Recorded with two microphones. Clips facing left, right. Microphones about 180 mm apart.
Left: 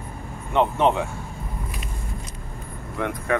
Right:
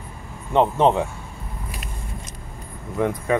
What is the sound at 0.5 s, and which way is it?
Speech, 35° right (ahead or behind).